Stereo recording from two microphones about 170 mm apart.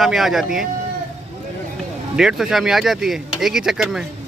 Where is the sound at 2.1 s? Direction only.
5° right (ahead or behind).